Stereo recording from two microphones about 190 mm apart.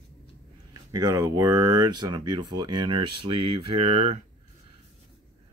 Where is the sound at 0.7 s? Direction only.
20° right (ahead or behind).